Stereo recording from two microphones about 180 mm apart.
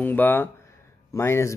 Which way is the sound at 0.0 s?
10° left (ahead or behind).